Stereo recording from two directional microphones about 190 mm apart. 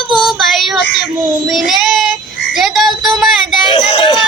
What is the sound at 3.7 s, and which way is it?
Speech, 25° left (ahead or behind).